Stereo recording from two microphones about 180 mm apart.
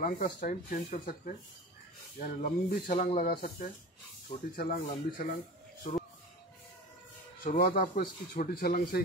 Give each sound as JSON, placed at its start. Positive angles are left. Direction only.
{"t": 0.0, "sound": "speech", "side_deg": 50}
{"t": 7.4, "sound": "speech", "side_deg": 55}